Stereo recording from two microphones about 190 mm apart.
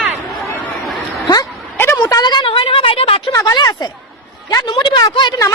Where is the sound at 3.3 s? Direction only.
20° left (ahead or behind).